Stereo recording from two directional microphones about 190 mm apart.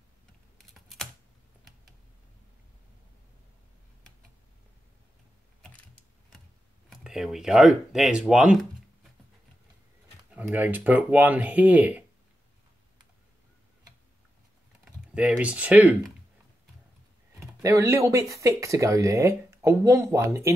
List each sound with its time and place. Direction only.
0.6 s computer keyboard: centre (ahead or behind)
6.9 s speech: centre (ahead or behind)
10.3 s speech: 10° right (ahead or behind)
15.1 s speech: 5° right (ahead or behind)
17.6 s speech: 15° right (ahead or behind)